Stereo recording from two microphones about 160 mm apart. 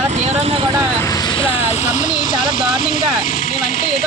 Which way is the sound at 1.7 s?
45° left (ahead or behind).